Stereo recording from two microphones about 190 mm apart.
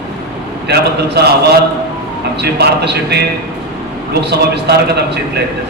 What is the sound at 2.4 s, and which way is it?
A man's voice, 60° right (ahead or behind).